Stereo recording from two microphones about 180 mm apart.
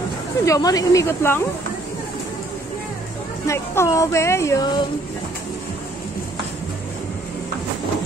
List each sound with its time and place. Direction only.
0.5 s speech: 20° left (ahead or behind)
3.4 s speech: 15° left (ahead or behind)